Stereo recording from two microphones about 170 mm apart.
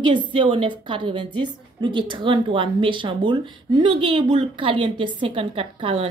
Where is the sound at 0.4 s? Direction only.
30° right (ahead or behind).